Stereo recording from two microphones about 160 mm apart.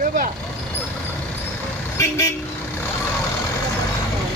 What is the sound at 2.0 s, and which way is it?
Vehicle, 20° left (ahead or behind).